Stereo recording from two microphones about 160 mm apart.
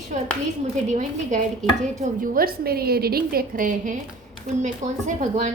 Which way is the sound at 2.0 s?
60° right (ahead or behind).